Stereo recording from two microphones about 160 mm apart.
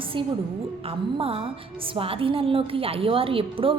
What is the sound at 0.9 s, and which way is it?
A woman's voice, 35° right (ahead or behind).